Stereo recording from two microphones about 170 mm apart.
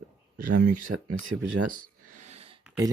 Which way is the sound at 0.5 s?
55° right (ahead or behind).